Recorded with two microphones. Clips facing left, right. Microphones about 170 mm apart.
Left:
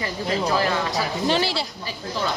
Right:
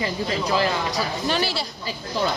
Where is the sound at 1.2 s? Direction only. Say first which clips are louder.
Left 3 dB; 25° left (ahead or behind).